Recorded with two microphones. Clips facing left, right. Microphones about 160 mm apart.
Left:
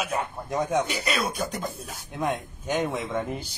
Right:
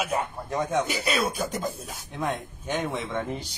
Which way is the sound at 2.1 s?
10° left (ahead or behind).